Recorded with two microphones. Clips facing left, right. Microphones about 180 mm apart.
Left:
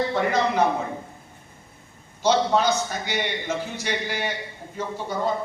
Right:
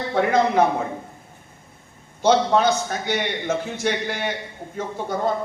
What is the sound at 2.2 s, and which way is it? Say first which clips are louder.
A man's voice: right 3 dB; 55° right (ahead or behind).